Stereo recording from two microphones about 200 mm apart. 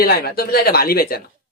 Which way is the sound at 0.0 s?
50° left (ahead or behind).